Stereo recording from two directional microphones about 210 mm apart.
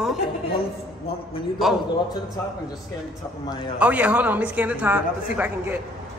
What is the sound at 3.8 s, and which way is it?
A man's voice, 5° right (ahead or behind).